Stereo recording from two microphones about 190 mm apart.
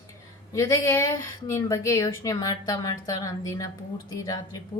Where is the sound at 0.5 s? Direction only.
15° left (ahead or behind).